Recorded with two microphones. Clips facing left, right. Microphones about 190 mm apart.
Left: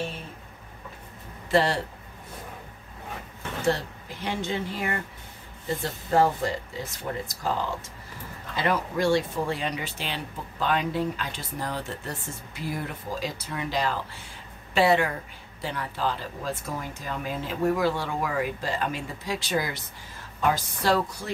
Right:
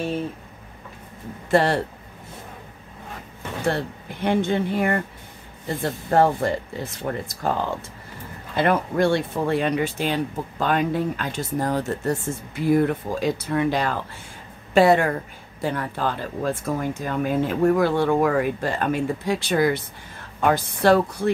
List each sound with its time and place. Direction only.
1.5 s speech: 55° right (ahead or behind)
3.6 s speech: 55° right (ahead or behind)